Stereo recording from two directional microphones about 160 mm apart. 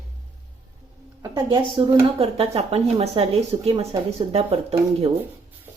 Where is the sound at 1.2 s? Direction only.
25° right (ahead or behind); by 4.7 s 40° right (ahead or behind).